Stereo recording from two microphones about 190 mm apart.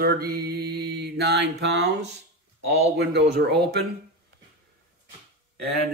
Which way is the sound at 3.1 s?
65° right (ahead or behind).